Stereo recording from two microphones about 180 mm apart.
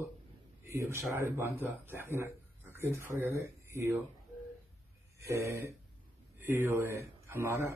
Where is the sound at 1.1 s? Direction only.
15° right (ahead or behind).